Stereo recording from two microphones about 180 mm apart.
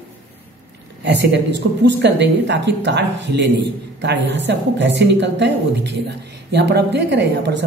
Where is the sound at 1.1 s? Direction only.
75° right (ahead or behind).